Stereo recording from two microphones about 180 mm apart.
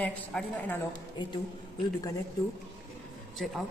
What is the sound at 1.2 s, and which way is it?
Speech, 25° left (ahead or behind).